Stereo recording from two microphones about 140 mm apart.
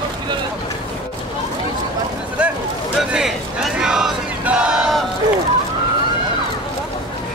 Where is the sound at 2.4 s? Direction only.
10° right (ahead or behind).